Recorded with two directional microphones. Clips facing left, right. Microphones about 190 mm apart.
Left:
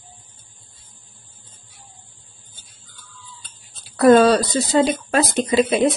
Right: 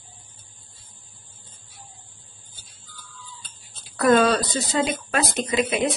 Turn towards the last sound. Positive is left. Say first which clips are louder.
# left 6 dB
turn(degrees=30)  # may be behind; listen again after turning